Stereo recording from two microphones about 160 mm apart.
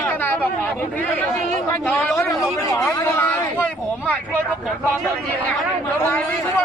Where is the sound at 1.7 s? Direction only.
5° left (ahead or behind).